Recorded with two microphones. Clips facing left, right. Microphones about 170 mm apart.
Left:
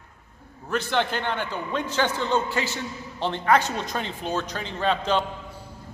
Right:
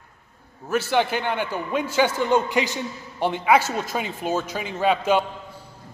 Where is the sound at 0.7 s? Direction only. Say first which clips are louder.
Right 3 dB; 5° right (ahead or behind).